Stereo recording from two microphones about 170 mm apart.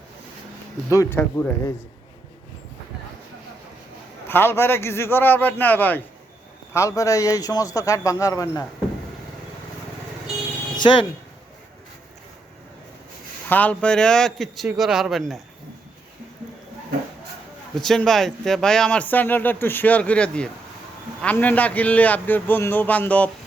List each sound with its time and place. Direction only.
0.9 s speech: 15° left (ahead or behind)
4.3 s a man's voice: 15° left (ahead or behind)
10.8 s speech: 30° left (ahead or behind)
13.5 s a man's voice: 10° left (ahead or behind)
17.7 s speech: centre (ahead or behind)